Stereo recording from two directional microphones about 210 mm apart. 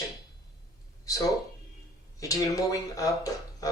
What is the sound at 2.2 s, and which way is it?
Speech, 15° left (ahead or behind).